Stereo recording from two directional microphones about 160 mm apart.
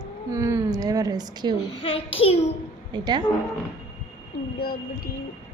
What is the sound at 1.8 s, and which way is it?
Speech, 35° left (ahead or behind).